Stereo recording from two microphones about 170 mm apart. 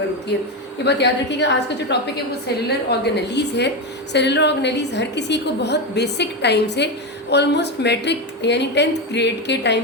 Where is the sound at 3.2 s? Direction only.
85° left.